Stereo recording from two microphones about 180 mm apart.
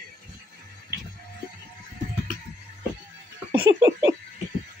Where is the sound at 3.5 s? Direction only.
20° right (ahead or behind).